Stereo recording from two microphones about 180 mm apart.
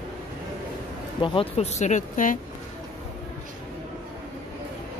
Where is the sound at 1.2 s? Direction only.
35° left (ahead or behind).